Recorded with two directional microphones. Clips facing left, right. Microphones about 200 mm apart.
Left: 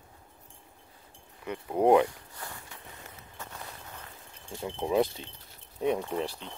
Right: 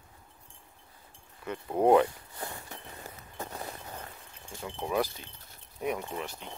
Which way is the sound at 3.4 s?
35° right (ahead or behind).